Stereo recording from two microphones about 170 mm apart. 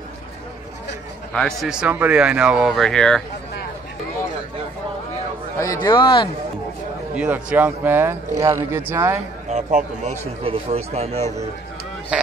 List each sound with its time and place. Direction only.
1.3 s speech: centre (ahead or behind)
5.6 s speech: 25° left (ahead or behind)
7.2 s speech: 5° right (ahead or behind)
9.5 s a man's voice: 40° right (ahead or behind)
12.1 s speech: 5° right (ahead or behind)